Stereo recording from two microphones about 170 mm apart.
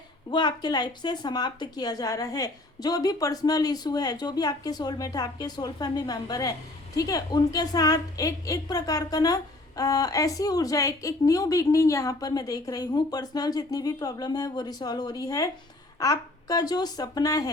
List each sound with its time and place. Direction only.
0.3 s a woman's voice: 25° left (ahead or behind)